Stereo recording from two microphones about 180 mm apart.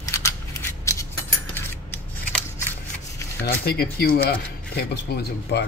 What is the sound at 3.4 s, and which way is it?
Speech, 55° left (ahead or behind).